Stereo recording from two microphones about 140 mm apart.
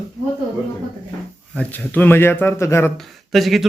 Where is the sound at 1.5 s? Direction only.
10° left (ahead or behind).